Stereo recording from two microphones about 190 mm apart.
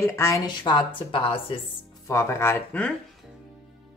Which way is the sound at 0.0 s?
15° left (ahead or behind).